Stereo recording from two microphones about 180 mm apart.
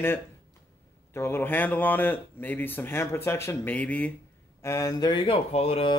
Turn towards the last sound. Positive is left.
turn(degrees=30)  # may be behind; listen again after turning